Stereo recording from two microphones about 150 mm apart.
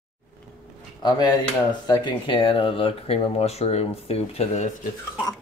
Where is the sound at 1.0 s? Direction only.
25° left (ahead or behind); by 4.7 s 50° left (ahead or behind).